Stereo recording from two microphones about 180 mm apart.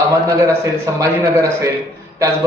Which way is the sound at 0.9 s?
20° right (ahead or behind).